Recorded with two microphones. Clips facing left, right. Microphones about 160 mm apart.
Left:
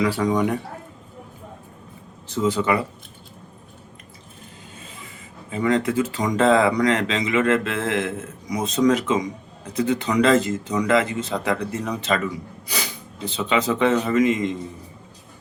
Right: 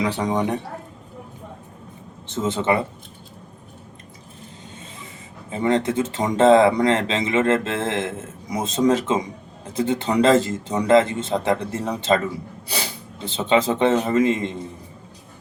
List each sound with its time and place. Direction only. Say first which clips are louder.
0.0 s speech: left 2 dB; 20° right (ahead or behind)
2.2 s speech: left 1 dB; 25° right (ahead or behind)
5.5 s speech: right 1 dB; 25° right (ahead or behind)